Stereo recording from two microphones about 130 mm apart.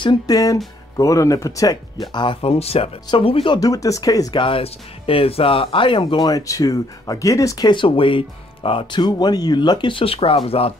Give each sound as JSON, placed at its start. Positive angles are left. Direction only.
{"t": 0.0, "sound": "speech", "side_deg": 30}
{"t": 2.1, "sound": "speech", "side_deg": 45}
{"t": 3.5, "sound": "speech", "side_deg": 30}